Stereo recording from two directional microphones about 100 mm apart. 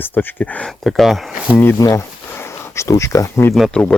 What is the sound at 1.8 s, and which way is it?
Speech, 35° left (ahead or behind).